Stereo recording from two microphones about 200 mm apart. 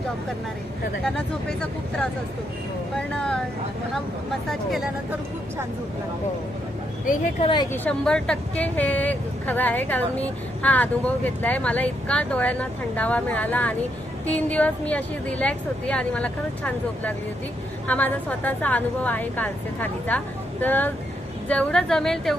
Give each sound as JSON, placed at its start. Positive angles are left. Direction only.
{"t": 1.0, "sound": "a woman's voice", "side_deg": 5}
{"t": 2.9, "sound": "a woman's voice", "side_deg": 5}
{"t": 4.4, "sound": "a woman's voice", "side_deg": 0}
{"t": 7.0, "sound": "speech", "side_deg": 40}
{"t": 7.4, "sound": "a woman's voice", "side_deg": 20}
{"t": 7.7, "sound": "a woman's voice", "side_deg": 5}